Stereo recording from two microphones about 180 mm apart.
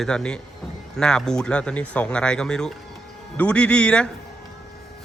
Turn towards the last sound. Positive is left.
turn(degrees=5)  # may be behind; listen again after turning